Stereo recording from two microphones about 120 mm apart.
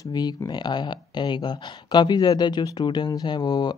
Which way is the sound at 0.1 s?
35° left (ahead or behind).